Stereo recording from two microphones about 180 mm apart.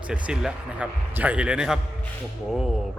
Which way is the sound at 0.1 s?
5° right (ahead or behind).